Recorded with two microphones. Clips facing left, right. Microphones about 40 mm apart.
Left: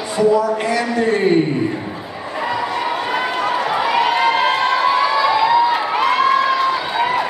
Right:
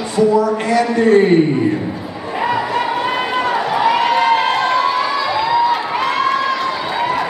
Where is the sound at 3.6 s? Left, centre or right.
Centre.